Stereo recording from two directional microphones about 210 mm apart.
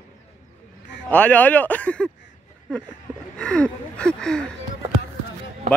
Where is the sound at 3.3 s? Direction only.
5° left (ahead or behind).